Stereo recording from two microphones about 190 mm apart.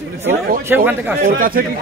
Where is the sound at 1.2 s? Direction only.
50° right (ahead or behind).